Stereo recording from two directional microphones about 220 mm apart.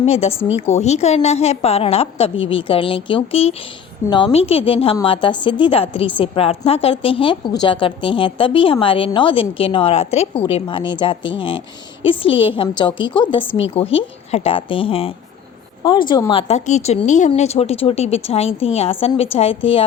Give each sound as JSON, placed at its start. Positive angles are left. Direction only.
{"t": 0.0, "sound": "a woman's voice", "side_deg": 30}